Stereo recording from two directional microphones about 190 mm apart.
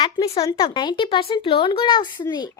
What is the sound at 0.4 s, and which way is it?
A child's voice, 20° left (ahead or behind).